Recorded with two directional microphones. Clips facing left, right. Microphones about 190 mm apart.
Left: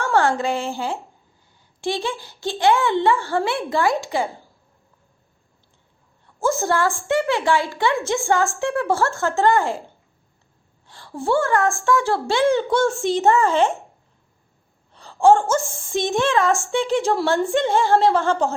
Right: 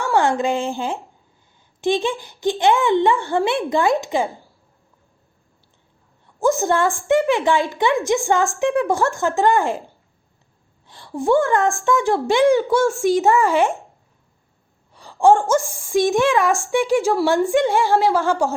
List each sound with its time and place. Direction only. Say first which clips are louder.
0.0 s a woman's voice: right 1 dB; 15° right (ahead or behind)
6.4 s a woman's voice: right 3 dB; 15° right (ahead or behind)
14.9 s a woman's voice: even; 15° right (ahead or behind)